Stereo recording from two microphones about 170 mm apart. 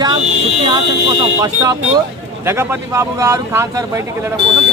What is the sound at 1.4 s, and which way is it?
Speech, 20° right (ahead or behind).